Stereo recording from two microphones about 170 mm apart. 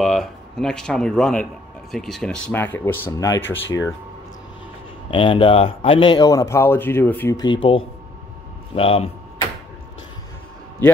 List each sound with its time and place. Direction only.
0.0 s a man's voice: centre (ahead or behind)
5.1 s speech: 30° left (ahead or behind); by 7.3 s 10° left (ahead or behind)
7.3 s speech: 25° left (ahead or behind)